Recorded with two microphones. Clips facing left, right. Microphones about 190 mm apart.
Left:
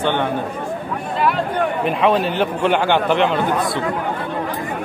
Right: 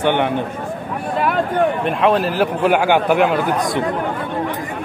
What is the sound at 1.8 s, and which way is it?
A man's voice, centre (ahead or behind).